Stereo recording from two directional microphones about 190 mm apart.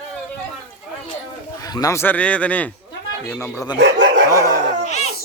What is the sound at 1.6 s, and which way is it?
Speech, 20° left (ahead or behind).